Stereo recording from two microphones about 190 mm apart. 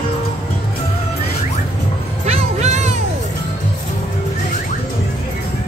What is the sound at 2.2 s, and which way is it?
Music, 35° right (ahead or behind).